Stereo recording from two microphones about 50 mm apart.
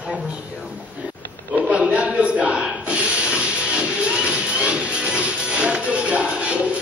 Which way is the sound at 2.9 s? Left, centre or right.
Right.